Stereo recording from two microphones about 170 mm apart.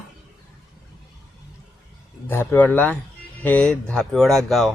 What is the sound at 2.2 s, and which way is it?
Speech, 10° left (ahead or behind).